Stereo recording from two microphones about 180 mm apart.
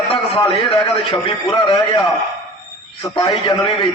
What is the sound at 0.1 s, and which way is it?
A man's voice, 30° left (ahead or behind).